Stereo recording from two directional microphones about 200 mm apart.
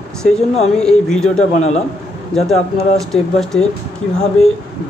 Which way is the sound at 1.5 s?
35° left (ahead or behind).